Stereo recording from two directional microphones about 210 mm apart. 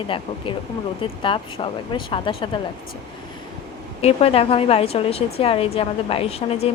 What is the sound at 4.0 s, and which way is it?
Speech, 30° left (ahead or behind).